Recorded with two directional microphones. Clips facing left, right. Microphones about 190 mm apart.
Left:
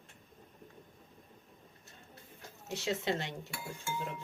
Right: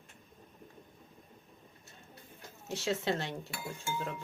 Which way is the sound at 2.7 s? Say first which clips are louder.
Right 1 dB; 20° left (ahead or behind).